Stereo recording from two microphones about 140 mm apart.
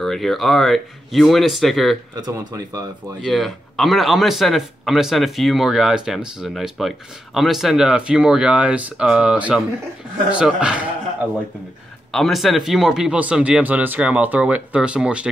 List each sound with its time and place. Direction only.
0.0 s speech: centre (ahead or behind)
2.1 s speech: 25° right (ahead or behind)
3.3 s speech: centre (ahead or behind)
12.1 s speech: centre (ahead or behind)